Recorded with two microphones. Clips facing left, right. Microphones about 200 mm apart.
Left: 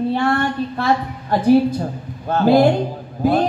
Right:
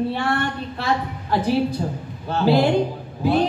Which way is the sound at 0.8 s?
50° left (ahead or behind).